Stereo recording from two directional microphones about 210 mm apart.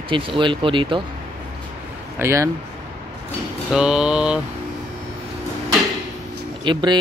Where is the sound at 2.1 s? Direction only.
15° right (ahead or behind).